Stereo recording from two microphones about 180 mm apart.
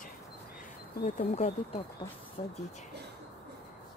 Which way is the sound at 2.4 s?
35° left (ahead or behind).